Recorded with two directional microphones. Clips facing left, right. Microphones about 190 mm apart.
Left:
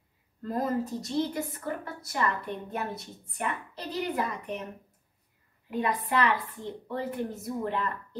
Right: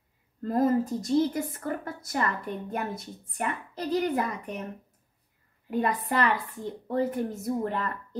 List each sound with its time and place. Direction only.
0.4 s a woman's voice: 50° right (ahead or behind)
5.7 s a woman's voice: 45° right (ahead or behind)